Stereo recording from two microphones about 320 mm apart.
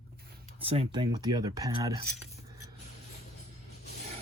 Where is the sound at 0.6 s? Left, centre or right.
Centre.